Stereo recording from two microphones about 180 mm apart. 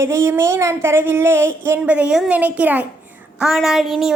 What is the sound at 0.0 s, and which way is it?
A woman's voice, 15° right (ahead or behind).